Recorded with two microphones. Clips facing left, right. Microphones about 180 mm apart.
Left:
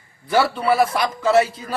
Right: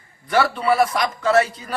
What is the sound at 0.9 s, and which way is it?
Speech, 5° left (ahead or behind).